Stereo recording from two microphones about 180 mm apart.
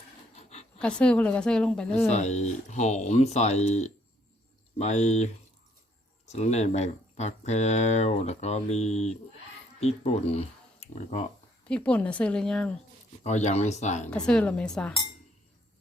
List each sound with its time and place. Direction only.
0.8 s a woman's voice: 5° left (ahead or behind)
2.0 s speech: 40° left (ahead or behind)
11.7 s a woman's voice: 5° left (ahead or behind)
13.2 s speech: 40° left (ahead or behind)
14.3 s a woman's voice: 5° left (ahead or behind)